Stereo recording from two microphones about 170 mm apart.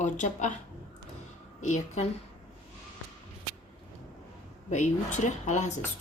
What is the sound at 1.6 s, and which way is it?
Speech, 45° left (ahead or behind).